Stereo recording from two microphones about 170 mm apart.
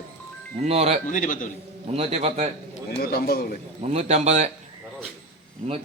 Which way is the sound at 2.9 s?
60° left (ahead or behind).